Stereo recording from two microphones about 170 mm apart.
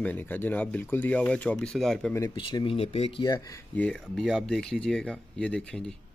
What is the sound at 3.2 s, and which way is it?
Speech, 20° left (ahead or behind).